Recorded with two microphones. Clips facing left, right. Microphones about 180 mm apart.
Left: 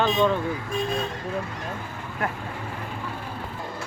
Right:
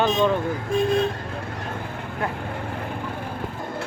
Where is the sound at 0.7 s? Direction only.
60° right (ahead or behind).